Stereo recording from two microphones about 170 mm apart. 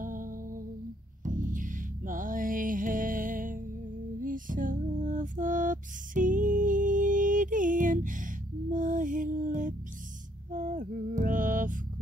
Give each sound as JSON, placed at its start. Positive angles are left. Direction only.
{"t": 0.0, "sound": "humming", "side_deg": -55}
{"t": 1.2, "sound": "music", "side_deg": -50}
{"t": 4.2, "sound": "lullaby", "side_deg": -50}
{"t": 10.5, "sound": "music", "side_deg": -50}